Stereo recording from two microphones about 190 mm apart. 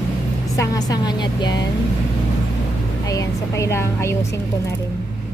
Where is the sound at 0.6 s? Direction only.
20° left (ahead or behind).